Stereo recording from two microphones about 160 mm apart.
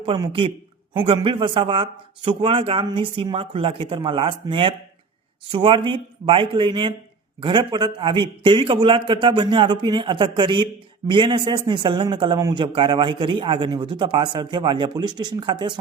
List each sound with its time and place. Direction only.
0.0 s a man's voice: 30° right (ahead or behind)